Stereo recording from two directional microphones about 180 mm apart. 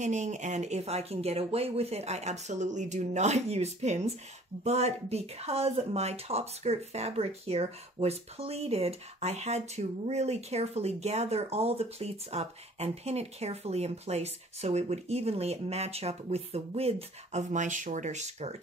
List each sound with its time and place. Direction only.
0.0 s speech: 40° right (ahead or behind)